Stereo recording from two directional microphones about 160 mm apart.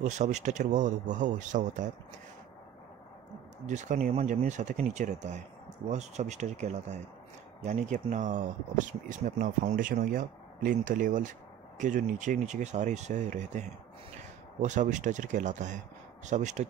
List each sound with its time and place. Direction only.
0.0 s speech: 45° right (ahead or behind)
3.6 s speech: 50° right (ahead or behind)